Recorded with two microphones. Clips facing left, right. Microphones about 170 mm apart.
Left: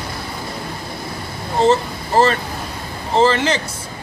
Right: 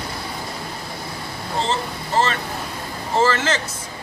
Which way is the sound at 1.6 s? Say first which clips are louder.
Left 9 dB; 40° left (ahead or behind).